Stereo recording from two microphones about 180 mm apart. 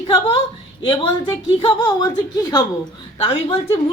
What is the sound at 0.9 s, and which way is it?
Speech, 30° left (ahead or behind).